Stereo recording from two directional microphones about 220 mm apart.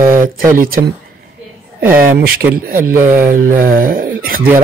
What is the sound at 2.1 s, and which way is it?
Speech, 40° right (ahead or behind).